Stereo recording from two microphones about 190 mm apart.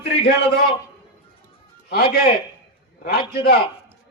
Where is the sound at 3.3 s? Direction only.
55° left (ahead or behind).